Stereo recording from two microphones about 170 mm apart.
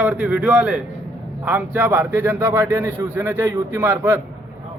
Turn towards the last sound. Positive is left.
turn(degrees=-15)  # may be behind; listen again after turning